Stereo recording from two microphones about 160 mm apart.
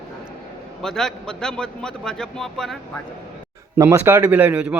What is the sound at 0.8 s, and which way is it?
A man's voice, 5° left (ahead or behind).